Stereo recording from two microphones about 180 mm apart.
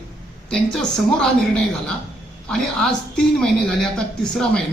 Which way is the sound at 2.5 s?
5° left (ahead or behind).